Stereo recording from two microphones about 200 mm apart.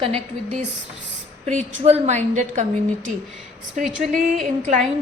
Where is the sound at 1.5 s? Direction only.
35° right (ahead or behind).